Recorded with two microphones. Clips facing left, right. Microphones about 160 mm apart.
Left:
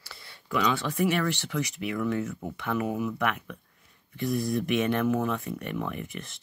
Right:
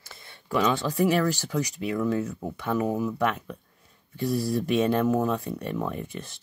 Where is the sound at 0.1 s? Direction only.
20° right (ahead or behind).